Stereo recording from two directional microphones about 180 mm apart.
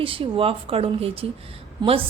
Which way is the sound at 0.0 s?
30° right (ahead or behind).